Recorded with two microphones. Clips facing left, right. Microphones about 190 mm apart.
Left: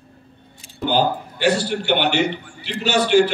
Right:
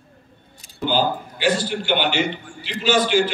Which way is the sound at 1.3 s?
65° left (ahead or behind).